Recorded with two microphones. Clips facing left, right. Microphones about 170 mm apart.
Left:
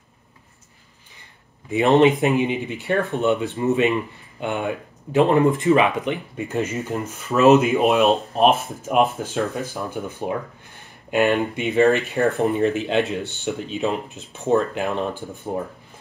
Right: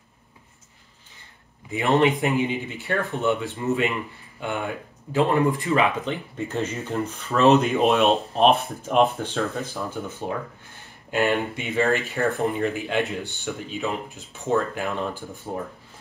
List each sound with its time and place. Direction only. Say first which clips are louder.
1.7 s speech: left 5 dB; 20° left (ahead or behind)